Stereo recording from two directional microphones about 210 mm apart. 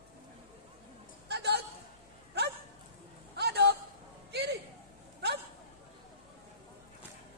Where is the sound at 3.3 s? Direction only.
50° right (ahead or behind).